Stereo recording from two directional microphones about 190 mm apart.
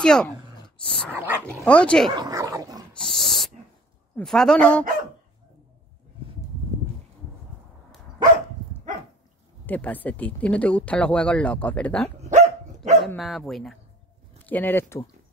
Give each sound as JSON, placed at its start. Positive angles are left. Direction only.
{"t": 0.0, "sound": "speech", "side_deg": 5}
{"t": 1.1, "sound": "speech", "side_deg": -10}
{"t": 1.6, "sound": "speech", "side_deg": 5}
{"t": 2.1, "sound": "dog", "side_deg": -20}
{"t": 2.9, "sound": "dog", "side_deg": 5}
{"t": 4.2, "sound": "speech", "side_deg": 5}
{"t": 9.7, "sound": "speech", "side_deg": 10}
{"t": 12.2, "sound": "dog", "side_deg": -40}
{"t": 13.0, "sound": "speech", "side_deg": 0}